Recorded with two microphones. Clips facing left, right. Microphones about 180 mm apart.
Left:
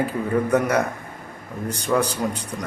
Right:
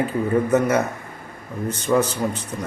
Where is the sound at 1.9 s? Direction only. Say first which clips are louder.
Right 2 dB; 10° right (ahead or behind).